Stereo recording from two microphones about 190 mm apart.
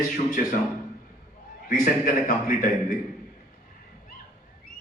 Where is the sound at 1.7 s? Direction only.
45° left (ahead or behind).